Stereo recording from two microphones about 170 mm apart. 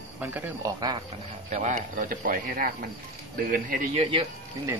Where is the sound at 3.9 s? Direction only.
35° right (ahead or behind).